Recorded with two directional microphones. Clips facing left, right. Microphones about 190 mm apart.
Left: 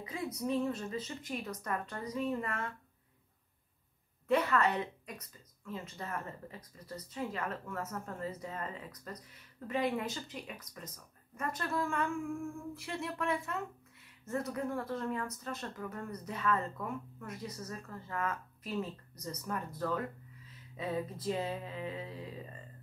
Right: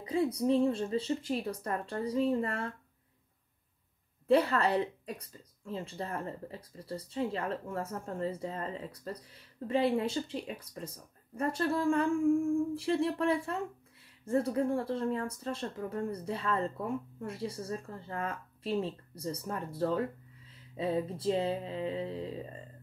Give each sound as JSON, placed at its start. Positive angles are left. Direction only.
{"t": 0.0, "sound": "speech", "side_deg": -30}
{"t": 4.3, "sound": "speech", "side_deg": -35}